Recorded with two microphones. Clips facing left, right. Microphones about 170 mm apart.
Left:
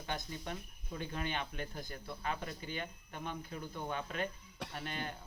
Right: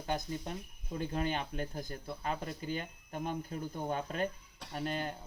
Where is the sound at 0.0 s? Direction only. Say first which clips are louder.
Right 5 dB; 35° right (ahead or behind).